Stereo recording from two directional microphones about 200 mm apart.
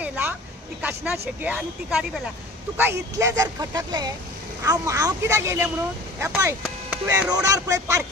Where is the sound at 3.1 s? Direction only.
15° right (ahead or behind).